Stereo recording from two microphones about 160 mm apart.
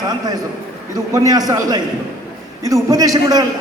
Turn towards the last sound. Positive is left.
turn(degrees=-25)  # may be behind; listen again after turning